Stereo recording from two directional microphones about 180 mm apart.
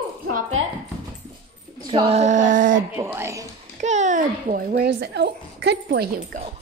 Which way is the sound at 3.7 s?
40° right (ahead or behind).